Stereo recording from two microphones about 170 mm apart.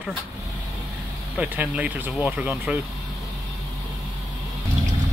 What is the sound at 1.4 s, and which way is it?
Speech, 10° right (ahead or behind).